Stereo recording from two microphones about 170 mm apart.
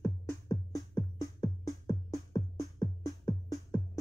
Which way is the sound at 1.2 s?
20° left (ahead or behind).